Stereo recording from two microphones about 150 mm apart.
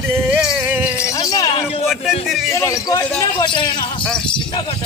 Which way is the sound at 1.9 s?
Centre (ahead or behind).